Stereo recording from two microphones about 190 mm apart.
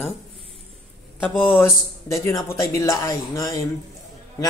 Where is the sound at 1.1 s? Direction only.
10° left (ahead or behind).